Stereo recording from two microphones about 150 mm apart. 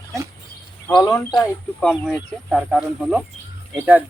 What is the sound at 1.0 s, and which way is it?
Speech, 25° left (ahead or behind).